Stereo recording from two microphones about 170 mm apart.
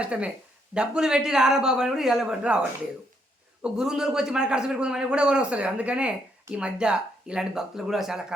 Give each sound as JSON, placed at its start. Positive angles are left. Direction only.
{"t": 0.0, "sound": "a man's voice", "side_deg": -5}
{"t": 3.6, "sound": "a man's voice", "side_deg": -5}